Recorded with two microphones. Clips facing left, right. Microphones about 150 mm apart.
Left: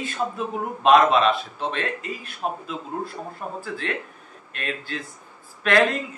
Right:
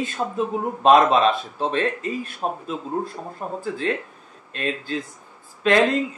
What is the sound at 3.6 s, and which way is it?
Speech, 30° right (ahead or behind).